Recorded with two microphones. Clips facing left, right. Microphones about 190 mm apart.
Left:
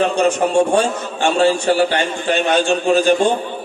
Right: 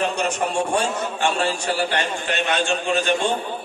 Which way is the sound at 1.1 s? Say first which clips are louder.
Left 11 dB; 25° left (ahead or behind).